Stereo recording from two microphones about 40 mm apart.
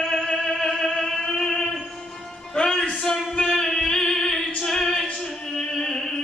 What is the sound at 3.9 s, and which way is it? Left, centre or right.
Music, centre.